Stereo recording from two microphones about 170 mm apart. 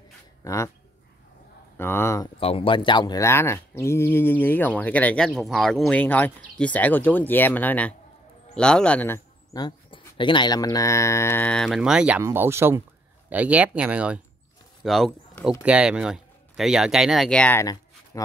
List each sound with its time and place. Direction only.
0.4 s speech: 20° left (ahead or behind)
1.8 s speech: 15° left (ahead or behind)
2.4 s speech: 30° left (ahead or behind); by 12.2 s 5° right (ahead or behind)
12.2 s speech: 15° right (ahead or behind); by 18.2 s 20° left (ahead or behind)